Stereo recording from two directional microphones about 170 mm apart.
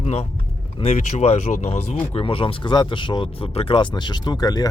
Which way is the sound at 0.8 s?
40° left (ahead or behind).